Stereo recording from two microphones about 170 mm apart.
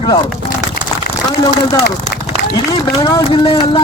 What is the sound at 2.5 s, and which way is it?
A man's voice, 25° left (ahead or behind).